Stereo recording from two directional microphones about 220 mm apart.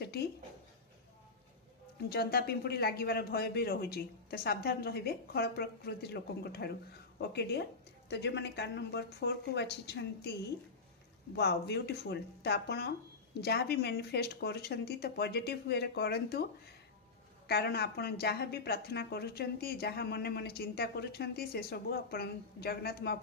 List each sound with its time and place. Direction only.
0.0 s a sound: 45° left (ahead or behind)
2.0 s a woman's voice: 45° left (ahead or behind)
11.3 s a woman's voice: 50° left (ahead or behind)
17.5 s a woman's voice: 45° left (ahead or behind)